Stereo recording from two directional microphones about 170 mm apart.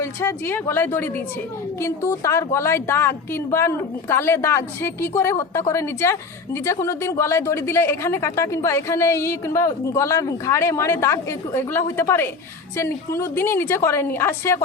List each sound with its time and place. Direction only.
0.0 s a woman's voice: 15° left (ahead or behind)